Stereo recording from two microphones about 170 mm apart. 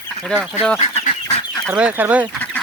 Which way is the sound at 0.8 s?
45° left (ahead or behind).